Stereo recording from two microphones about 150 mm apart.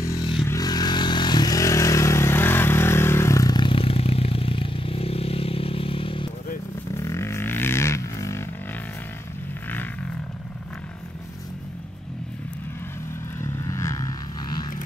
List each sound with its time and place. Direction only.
0.0 s scrape: 20° left (ahead or behind)
0.5 s vehicle: 25° left (ahead or behind)
7.0 s a sound: 20° left (ahead or behind)
13.4 s vehicle: 20° left (ahead or behind)